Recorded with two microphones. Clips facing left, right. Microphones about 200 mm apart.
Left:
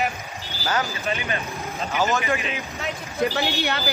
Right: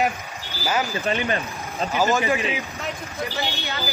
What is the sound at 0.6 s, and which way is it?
Speech, 15° right (ahead or behind).